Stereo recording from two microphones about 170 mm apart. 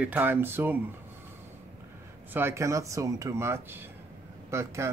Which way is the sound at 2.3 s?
15° right (ahead or behind).